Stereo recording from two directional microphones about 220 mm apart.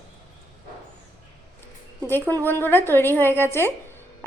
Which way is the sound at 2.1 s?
10° left (ahead or behind).